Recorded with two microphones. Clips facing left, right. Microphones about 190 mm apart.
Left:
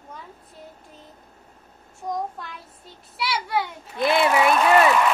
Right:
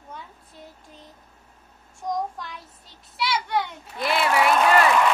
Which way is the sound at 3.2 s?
5° left (ahead or behind).